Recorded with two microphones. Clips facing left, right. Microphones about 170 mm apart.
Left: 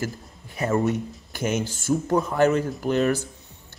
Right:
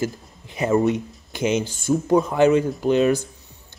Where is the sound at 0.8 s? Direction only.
Centre (ahead or behind).